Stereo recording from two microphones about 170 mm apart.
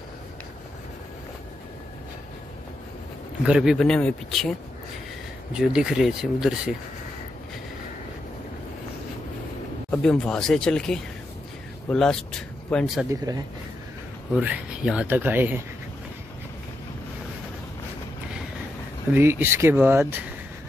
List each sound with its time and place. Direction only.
3.4 s speech: 5° right (ahead or behind)
5.5 s speech: 5° right (ahead or behind)
9.8 s speech: 5° left (ahead or behind)
13.1 s speech: 20° right (ahead or behind)
14.4 s speech: 5° right (ahead or behind)
19.1 s speech: 10° right (ahead or behind)